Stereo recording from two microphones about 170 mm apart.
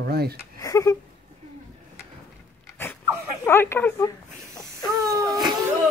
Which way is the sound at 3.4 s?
15° left (ahead or behind).